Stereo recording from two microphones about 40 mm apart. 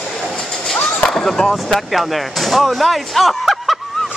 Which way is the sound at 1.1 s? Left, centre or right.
Centre.